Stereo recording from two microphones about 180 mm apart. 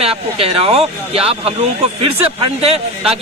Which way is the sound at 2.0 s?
30° right (ahead or behind).